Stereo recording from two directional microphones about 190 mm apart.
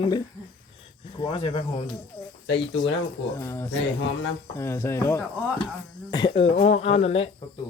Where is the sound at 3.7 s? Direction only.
70° left (ahead or behind).